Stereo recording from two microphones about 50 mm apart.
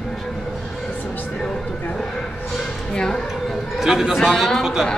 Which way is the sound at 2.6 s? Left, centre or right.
Centre.